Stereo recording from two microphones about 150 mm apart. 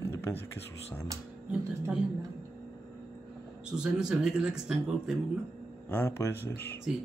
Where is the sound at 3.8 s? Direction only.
5° right (ahead or behind).